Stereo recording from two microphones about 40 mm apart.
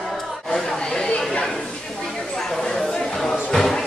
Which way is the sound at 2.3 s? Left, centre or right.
Centre.